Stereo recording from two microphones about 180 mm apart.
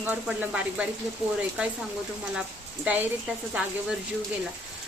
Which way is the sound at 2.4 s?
10° right (ahead or behind).